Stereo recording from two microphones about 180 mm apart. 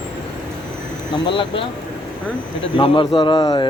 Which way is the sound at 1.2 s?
30° left (ahead or behind).